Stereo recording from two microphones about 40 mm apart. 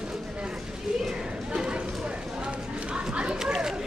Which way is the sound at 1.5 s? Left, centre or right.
Centre.